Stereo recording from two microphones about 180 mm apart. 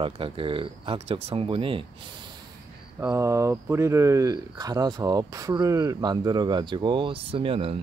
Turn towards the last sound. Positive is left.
turn(degrees=-30)  # may be behind; listen again after turning